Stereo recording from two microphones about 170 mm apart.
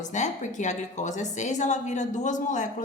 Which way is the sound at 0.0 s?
45° left (ahead or behind).